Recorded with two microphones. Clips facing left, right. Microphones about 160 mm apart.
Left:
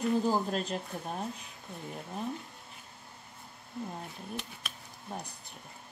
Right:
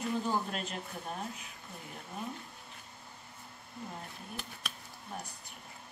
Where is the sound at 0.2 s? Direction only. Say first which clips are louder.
Left 5 dB; 35° left (ahead or behind).